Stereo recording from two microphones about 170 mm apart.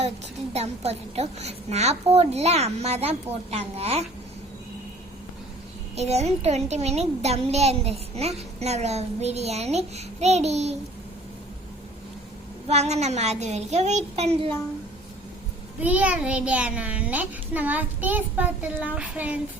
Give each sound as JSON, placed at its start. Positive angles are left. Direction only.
{"t": 0.5, "sound": "a child's voice", "side_deg": -40}
{"t": 6.0, "sound": "a child's voice", "side_deg": -40}
{"t": 12.6, "sound": "a child's voice", "side_deg": -40}
{"t": 15.8, "sound": "a child's voice", "side_deg": -10}